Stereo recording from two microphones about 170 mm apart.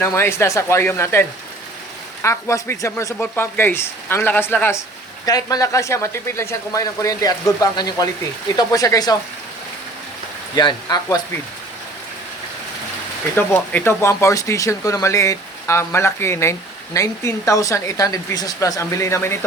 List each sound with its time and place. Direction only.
0.0 s speech: 15° left (ahead or behind)
2.2 s speech: 15° left (ahead or behind)
10.5 s speech: 25° left (ahead or behind)
13.3 s speech: 10° left (ahead or behind)